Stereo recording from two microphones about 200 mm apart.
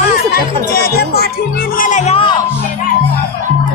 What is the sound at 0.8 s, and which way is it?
Music, 50° left (ahead or behind).